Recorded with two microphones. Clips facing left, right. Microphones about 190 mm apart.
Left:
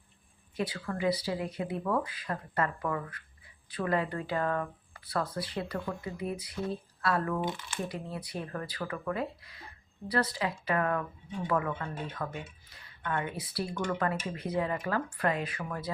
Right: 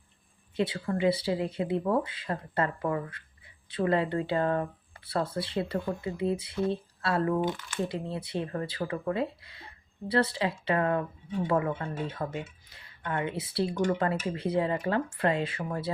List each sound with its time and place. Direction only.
0.5 s speech: 25° right (ahead or behind)